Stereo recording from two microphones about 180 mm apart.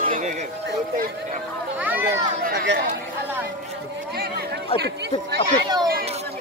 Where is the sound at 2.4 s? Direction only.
75° right (ahead or behind).